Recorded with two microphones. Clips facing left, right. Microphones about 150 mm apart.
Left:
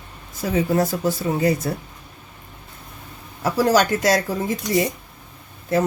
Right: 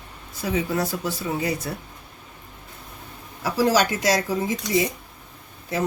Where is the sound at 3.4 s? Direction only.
50° left (ahead or behind).